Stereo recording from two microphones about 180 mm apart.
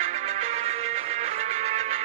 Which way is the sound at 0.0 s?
40° right (ahead or behind).